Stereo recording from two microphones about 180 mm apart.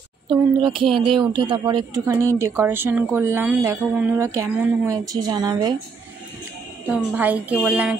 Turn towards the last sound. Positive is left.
turn(degrees=-5)  # may be behind; listen again after turning